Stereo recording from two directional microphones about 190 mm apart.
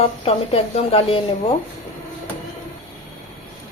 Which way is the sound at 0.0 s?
30° left (ahead or behind).